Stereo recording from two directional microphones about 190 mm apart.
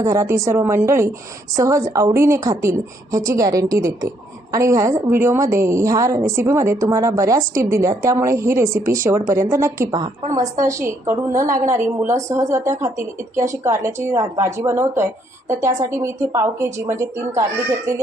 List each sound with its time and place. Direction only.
0.0 s speech: 15° right (ahead or behind)